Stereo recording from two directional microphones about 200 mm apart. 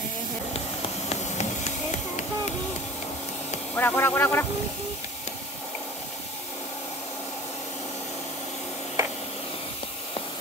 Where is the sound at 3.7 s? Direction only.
10° left (ahead or behind).